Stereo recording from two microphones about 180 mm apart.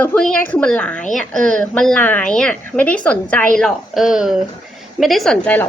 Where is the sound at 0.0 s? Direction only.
5° left (ahead or behind).